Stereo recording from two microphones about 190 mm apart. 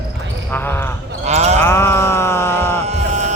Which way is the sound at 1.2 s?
35° right (ahead or behind).